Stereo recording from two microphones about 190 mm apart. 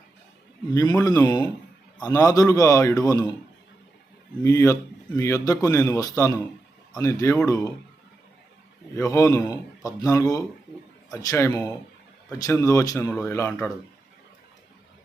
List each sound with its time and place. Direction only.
0.7 s a man's voice: 20° left (ahead or behind)
4.4 s a man's voice: 15° left (ahead or behind)
9.0 s a man's voice: 15° left (ahead or behind)